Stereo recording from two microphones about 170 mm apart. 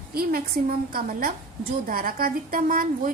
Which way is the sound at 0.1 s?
60° right (ahead or behind).